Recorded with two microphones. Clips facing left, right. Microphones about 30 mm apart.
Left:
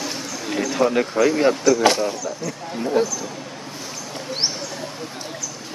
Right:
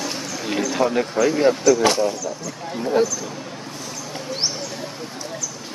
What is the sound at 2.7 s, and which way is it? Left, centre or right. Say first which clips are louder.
Speech: right 1 dB; centre.